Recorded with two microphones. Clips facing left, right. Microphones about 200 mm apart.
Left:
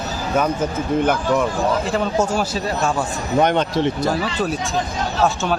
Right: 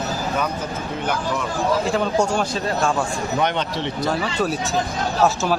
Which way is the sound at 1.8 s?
Centre (ahead or behind).